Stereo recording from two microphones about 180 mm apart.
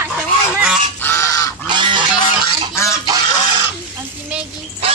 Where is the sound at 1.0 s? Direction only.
15° left (ahead or behind).